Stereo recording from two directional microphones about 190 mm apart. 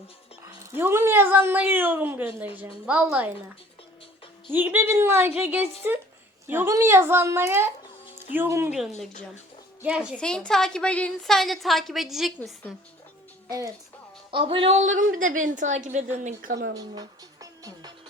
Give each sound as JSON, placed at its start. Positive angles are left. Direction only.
{"t": 0.6, "sound": "speech", "side_deg": -10}
{"t": 4.5, "sound": "speech", "side_deg": -10}
{"t": 8.7, "sound": "a woman's voice", "side_deg": 0}
{"t": 13.5, "sound": "speech", "side_deg": -15}
{"t": 14.3, "sound": "a woman's voice", "side_deg": -25}
{"t": 14.9, "sound": "a woman's voice", "side_deg": -45}
{"t": 16.7, "sound": "music", "side_deg": -20}